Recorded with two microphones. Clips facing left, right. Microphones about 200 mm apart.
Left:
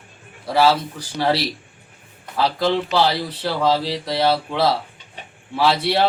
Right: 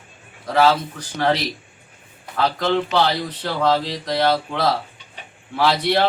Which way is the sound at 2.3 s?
10° left (ahead or behind).